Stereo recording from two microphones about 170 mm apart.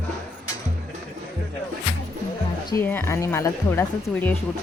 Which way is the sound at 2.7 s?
10° left (ahead or behind).